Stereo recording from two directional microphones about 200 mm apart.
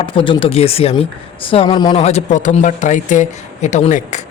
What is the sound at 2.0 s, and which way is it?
A man's voice, 35° left (ahead or behind).